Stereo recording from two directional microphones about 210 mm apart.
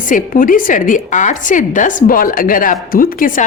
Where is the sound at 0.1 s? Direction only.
40° left (ahead or behind).